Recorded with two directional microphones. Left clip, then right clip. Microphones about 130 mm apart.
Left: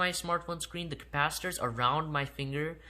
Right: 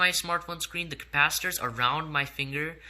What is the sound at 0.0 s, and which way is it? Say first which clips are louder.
Speech: right 5 dB; 45° left (ahead or behind).